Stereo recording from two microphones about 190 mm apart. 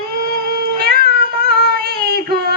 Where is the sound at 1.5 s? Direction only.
55° right (ahead or behind).